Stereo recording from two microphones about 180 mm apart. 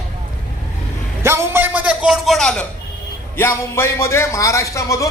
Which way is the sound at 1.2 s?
10° right (ahead or behind).